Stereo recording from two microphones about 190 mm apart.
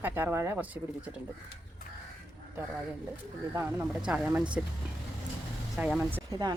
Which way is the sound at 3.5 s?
10° right (ahead or behind).